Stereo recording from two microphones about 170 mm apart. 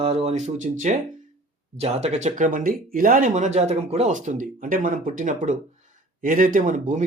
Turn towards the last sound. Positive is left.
turn(degrees=-50)  # may be behind; listen again after turning